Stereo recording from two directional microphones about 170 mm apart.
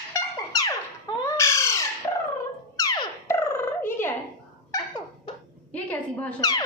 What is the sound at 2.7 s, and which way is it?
Dog, 20° left (ahead or behind).